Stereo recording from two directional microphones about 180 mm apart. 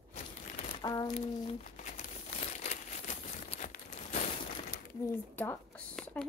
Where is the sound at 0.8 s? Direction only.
25° left (ahead or behind); by 4.2 s 40° left (ahead or behind).